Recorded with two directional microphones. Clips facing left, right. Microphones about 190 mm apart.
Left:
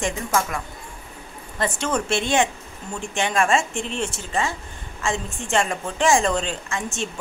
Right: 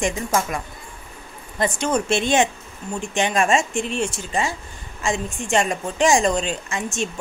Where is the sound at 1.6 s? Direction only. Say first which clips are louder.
Right 3 dB; 15° right (ahead or behind).